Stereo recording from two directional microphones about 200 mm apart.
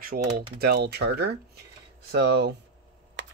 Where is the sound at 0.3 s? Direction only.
25° right (ahead or behind).